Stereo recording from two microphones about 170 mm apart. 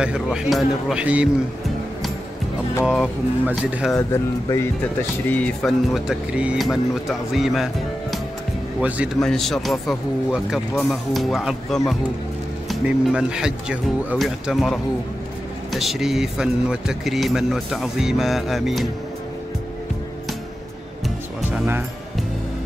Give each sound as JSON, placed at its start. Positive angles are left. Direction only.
{"t": 0.0, "sound": "speech", "side_deg": -5}
{"t": 2.8, "sound": "speech", "side_deg": -5}
{"t": 3.9, "sound": "speech", "side_deg": 15}
{"t": 21.5, "sound": "speech", "side_deg": -10}